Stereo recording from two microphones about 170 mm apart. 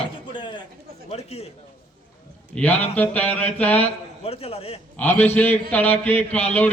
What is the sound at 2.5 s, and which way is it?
Speech, 10° left (ahead or behind).